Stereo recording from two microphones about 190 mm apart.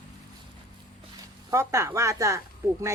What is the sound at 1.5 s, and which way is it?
Speech, 15° right (ahead or behind).